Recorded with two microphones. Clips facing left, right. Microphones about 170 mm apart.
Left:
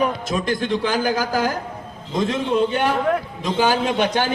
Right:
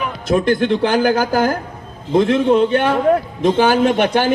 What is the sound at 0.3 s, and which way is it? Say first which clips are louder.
A man's voice: right 7 dB; 55° right (ahead or behind).